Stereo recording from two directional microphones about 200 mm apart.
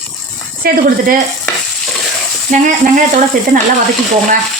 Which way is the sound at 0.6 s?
45° right (ahead or behind).